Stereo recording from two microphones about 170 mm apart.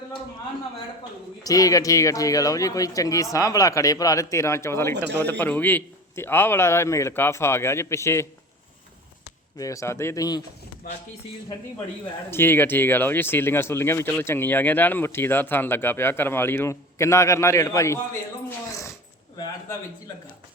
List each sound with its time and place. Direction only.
1.5 s speech: 20° left (ahead or behind)
9.6 s speech: 20° left (ahead or behind)
12.3 s speech: 15° left (ahead or behind)